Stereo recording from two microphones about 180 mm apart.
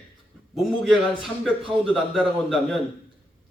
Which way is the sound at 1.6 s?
30° right (ahead or behind).